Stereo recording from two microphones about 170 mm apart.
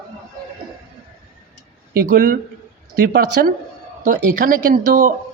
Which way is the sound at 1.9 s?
55° right (ahead or behind).